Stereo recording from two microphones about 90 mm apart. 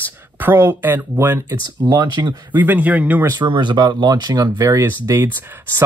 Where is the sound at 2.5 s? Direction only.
20° right (ahead or behind).